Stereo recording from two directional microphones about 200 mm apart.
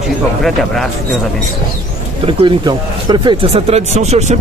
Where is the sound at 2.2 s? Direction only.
25° right (ahead or behind).